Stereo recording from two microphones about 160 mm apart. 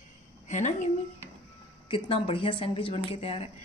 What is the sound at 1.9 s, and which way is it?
Speech, 35° left (ahead or behind).